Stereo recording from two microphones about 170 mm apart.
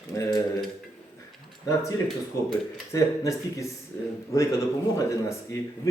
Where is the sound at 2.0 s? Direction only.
Centre (ahead or behind).